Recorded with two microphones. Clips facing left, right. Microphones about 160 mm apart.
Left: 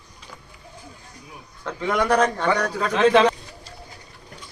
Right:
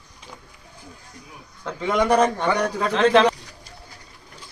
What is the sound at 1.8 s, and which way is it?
A man's voice, 15° right (ahead or behind).